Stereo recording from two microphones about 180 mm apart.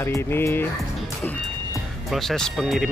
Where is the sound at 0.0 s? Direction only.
15° left (ahead or behind).